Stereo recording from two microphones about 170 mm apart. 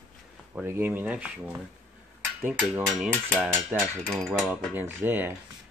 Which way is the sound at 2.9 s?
Centre (ahead or behind).